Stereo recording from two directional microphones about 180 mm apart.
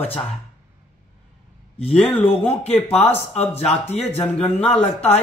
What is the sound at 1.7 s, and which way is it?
Speech, 35° left (ahead or behind).